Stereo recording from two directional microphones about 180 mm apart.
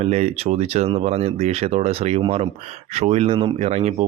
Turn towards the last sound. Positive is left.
turn(degrees=-35)  # may be behind; listen again after turning